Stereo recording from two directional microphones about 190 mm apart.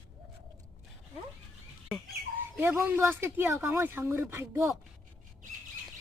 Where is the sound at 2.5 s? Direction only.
10° right (ahead or behind).